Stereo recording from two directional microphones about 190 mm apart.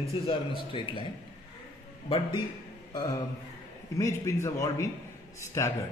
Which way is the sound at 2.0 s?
25° left (ahead or behind).